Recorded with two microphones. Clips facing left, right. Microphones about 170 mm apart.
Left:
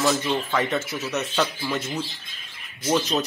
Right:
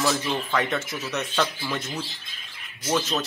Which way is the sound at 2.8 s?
15° left (ahead or behind).